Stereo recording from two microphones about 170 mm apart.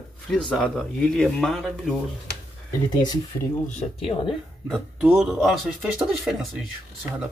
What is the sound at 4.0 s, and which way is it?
Speech, 30° left (ahead or behind).